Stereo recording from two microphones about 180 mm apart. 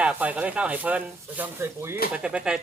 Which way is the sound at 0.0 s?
5° right (ahead or behind).